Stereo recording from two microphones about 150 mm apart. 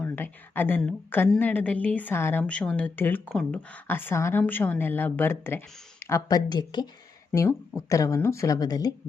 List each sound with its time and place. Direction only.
0.0 s a woman's voice: 15° left (ahead or behind)